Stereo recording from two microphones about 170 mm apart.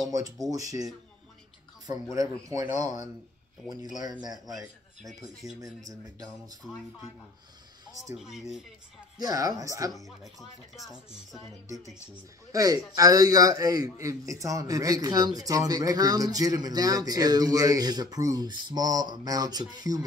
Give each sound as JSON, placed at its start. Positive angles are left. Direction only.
{"t": 0.5, "sound": "a man's voice", "side_deg": -20}
{"t": 2.1, "sound": "a man's voice", "side_deg": -20}
{"t": 3.6, "sound": "speech", "side_deg": 0}
{"t": 4.0, "sound": "a man's voice", "side_deg": -25}
{"t": 8.2, "sound": "speech", "side_deg": 0}
{"t": 9.2, "sound": "a man's voice", "side_deg": -20}
{"t": 11.1, "sound": "speech", "side_deg": 0}
{"t": 12.5, "sound": "a man's voice", "side_deg": -20}